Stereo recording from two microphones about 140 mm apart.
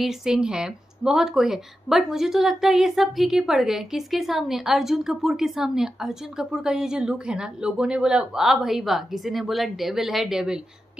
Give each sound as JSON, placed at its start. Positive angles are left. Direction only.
{"t": 0.0, "sound": "speech", "side_deg": -5}